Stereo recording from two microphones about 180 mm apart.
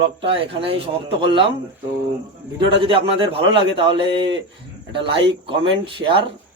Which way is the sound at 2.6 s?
30° right (ahead or behind).